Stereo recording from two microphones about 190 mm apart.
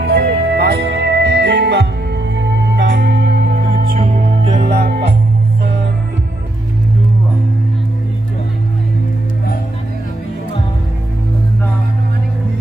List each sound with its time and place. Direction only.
0.0 s music: 60° right (ahead or behind)
4.0 s music: 40° right (ahead or behind)
4.6 s music: 50° right (ahead or behind)